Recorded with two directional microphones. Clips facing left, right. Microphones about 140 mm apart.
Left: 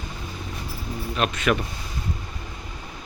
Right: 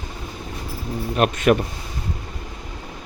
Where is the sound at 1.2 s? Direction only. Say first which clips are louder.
Right 6 dB; 50° right (ahead or behind).